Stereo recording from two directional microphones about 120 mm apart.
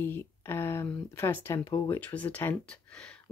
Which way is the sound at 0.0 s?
20° left (ahead or behind).